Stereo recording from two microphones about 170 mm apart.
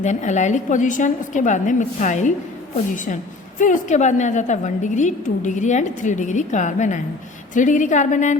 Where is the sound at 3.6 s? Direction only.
45° left (ahead or behind).